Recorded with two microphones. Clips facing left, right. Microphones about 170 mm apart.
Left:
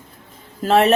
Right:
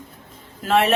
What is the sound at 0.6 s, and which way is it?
Speech, 35° left (ahead or behind).